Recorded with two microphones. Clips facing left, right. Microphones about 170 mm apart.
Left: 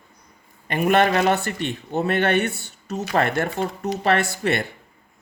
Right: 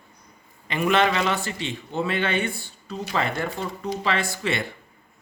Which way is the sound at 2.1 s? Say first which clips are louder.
Left 6 dB; 65° left (ahead or behind).